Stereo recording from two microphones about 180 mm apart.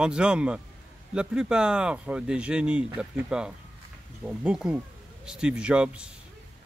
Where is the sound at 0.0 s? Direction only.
5° right (ahead or behind).